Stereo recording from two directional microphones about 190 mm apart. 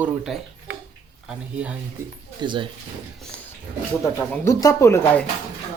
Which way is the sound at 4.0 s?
15° left (ahead or behind).